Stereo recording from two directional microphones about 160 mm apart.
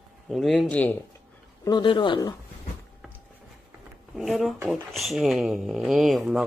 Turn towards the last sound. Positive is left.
turn(degrees=0)  # may be behind; listen again after turning